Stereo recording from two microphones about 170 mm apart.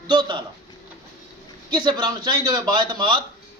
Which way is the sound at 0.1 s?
25° right (ahead or behind).